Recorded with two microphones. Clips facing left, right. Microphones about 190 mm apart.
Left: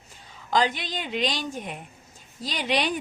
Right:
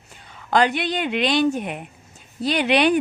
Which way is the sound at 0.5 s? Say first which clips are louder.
Right 5 dB; 70° right (ahead or behind).